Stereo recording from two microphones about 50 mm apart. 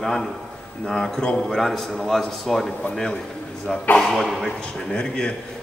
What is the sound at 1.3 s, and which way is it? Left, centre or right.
A man's voice, centre.